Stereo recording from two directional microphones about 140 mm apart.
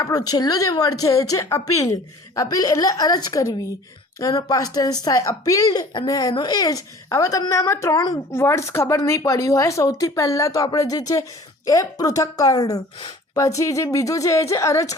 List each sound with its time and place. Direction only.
0.0 s speech: 25° left (ahead or behind)